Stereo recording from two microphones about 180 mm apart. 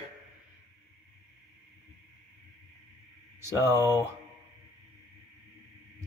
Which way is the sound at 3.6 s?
15° right (ahead or behind).